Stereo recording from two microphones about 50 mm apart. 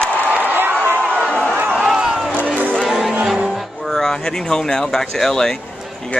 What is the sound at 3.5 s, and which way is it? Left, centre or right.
Speech, centre.